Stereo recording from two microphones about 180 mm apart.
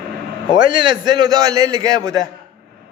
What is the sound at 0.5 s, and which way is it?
A man's voice, 25° right (ahead or behind).